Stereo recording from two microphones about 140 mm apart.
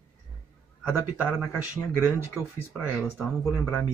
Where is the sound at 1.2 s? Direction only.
10° left (ahead or behind).